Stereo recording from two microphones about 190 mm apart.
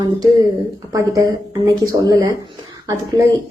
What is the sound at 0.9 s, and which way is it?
Speech, 20° right (ahead or behind).